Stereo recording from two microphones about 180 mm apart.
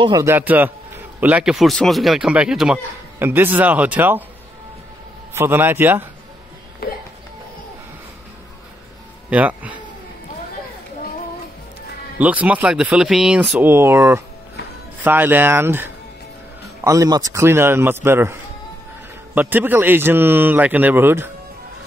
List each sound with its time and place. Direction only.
0.0 s speech: 25° right (ahead or behind)
0.3 s speech: 10° right (ahead or behind)
5.3 s speech: 15° right (ahead or behind)
6.8 s a sound: 60° left (ahead or behind)
9.3 s speech: 10° right (ahead or behind)
12.2 s speech: 10° right (ahead or behind)
19.3 s speech: 10° right (ahead or behind)